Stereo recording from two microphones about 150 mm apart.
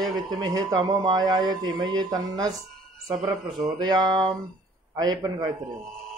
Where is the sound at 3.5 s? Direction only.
30° right (ahead or behind).